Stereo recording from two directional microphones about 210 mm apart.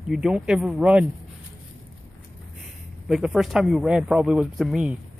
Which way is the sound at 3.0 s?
Centre (ahead or behind).